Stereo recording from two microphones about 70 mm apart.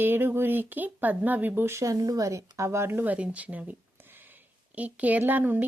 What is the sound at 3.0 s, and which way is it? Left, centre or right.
Speech, right.